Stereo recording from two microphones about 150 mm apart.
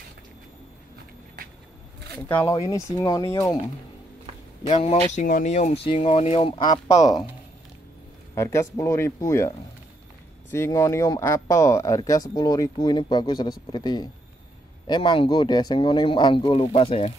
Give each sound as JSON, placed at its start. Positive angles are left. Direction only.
{"t": 2.1, "sound": "speech", "side_deg": 10}
{"t": 2.5, "sound": "speech", "side_deg": 25}
{"t": 4.6, "sound": "speech", "side_deg": 40}
{"t": 5.1, "sound": "speech", "side_deg": 60}
{"t": 5.9, "sound": "speech", "side_deg": 40}
{"t": 8.4, "sound": "speech", "side_deg": 20}
{"t": 10.5, "sound": "speech", "side_deg": 20}